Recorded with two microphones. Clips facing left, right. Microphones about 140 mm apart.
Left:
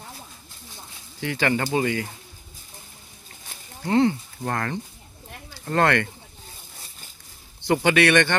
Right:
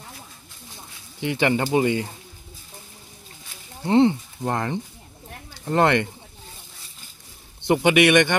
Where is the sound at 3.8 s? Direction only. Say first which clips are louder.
Right 3 dB; 25° right (ahead or behind).